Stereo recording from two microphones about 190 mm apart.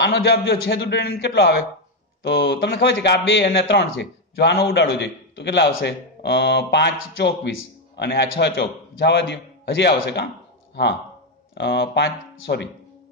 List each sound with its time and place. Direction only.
0.0 s a man's voice: 65° left (ahead or behind)